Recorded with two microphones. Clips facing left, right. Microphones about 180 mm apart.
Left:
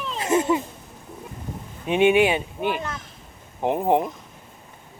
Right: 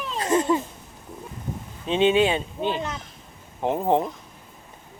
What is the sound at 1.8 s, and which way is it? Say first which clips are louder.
Speech: left 2 dB; 15° left (ahead or behind).